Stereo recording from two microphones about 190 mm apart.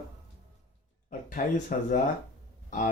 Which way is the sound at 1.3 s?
45° left (ahead or behind).